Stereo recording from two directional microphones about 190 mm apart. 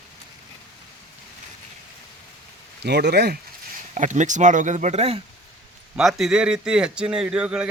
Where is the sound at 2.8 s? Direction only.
60° right (ahead or behind).